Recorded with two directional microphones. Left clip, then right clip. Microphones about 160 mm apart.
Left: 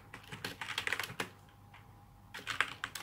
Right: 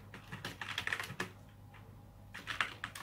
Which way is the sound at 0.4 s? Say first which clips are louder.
Left 2 dB; 70° left (ahead or behind).